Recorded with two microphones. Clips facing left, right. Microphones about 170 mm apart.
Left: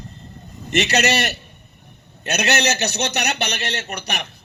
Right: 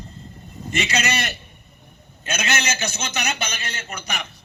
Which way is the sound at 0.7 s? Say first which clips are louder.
Left 5 dB; 70° left (ahead or behind).